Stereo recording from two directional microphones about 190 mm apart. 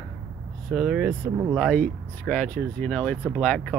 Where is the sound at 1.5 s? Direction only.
Centre (ahead or behind).